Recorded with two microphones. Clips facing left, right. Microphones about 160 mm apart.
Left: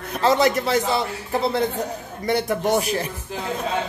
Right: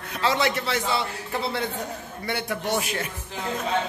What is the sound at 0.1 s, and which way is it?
Speech, 45° left (ahead or behind).